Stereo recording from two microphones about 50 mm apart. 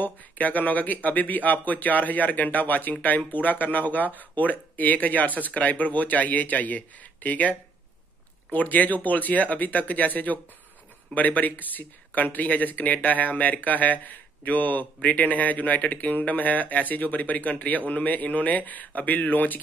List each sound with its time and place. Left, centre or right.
0.0 s speech: left